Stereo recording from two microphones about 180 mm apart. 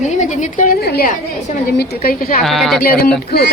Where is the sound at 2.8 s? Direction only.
55° left (ahead or behind).